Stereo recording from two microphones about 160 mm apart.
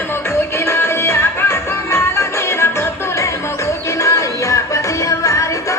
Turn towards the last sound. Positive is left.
turn(degrees=20)  # may be behind; listen again after turning